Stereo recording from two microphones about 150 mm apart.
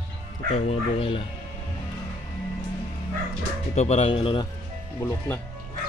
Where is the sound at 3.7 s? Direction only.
45° left (ahead or behind).